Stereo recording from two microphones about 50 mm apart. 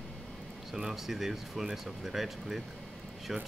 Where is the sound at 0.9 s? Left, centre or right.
Centre.